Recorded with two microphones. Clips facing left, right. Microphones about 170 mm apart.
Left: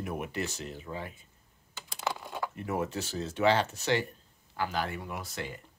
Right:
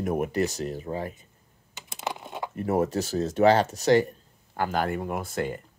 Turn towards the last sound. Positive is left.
turn(degrees=-50)  # may be behind; listen again after turning